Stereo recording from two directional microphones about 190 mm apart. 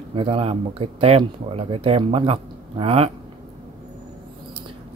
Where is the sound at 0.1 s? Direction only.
30° right (ahead or behind).